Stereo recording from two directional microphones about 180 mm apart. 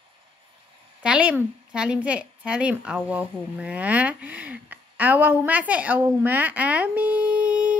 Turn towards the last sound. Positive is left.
turn(degrees=-5)  # may be behind; listen again after turning